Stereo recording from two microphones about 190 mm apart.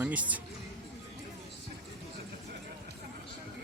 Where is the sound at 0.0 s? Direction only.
10° right (ahead or behind).